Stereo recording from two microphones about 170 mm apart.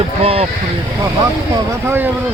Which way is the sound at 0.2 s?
35° right (ahead or behind).